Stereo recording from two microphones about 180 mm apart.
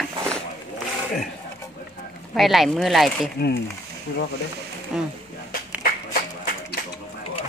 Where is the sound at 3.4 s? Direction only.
60° left (ahead or behind).